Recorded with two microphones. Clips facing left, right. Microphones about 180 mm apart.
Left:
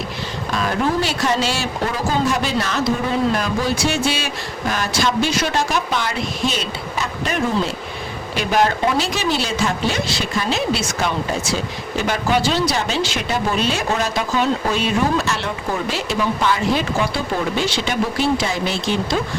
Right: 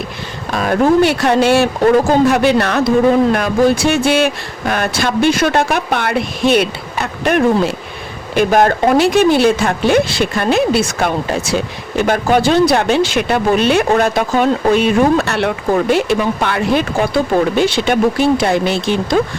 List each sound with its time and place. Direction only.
0.5 s speech: 50° right (ahead or behind)
8.4 s speech: 50° right (ahead or behind)